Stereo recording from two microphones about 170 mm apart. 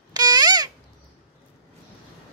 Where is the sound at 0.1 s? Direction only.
25° right (ahead or behind).